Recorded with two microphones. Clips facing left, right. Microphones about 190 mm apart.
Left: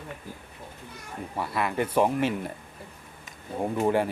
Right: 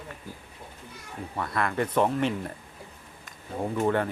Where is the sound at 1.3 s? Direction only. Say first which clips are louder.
Even; 5° left (ahead or behind).